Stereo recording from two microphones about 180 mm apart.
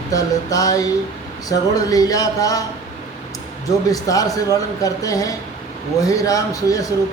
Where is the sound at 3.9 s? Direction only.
20° left (ahead or behind).